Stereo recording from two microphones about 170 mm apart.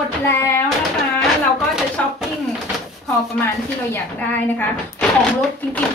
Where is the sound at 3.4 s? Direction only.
15° left (ahead or behind).